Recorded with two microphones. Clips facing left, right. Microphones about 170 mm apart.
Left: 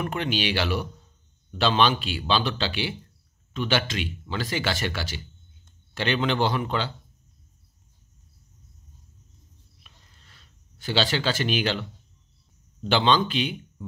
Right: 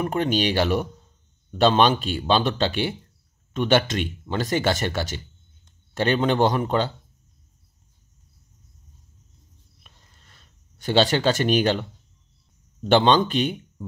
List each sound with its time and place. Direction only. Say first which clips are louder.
0.0 s speech: right 5 dB; 40° right (ahead or behind)
9.8 s a sound: right 2 dB; 45° right (ahead or behind)
12.8 s speech: right 4 dB; 50° right (ahead or behind)